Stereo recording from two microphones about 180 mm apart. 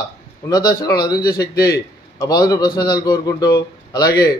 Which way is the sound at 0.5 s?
20° left (ahead or behind).